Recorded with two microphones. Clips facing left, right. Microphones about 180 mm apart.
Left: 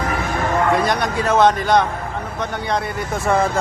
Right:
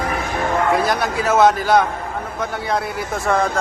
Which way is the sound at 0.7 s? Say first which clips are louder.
Even; 5° right (ahead or behind).